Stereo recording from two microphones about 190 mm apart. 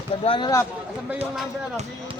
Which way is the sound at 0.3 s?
25° left (ahead or behind).